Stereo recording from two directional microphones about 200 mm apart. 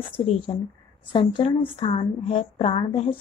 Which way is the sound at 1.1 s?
25° left (ahead or behind).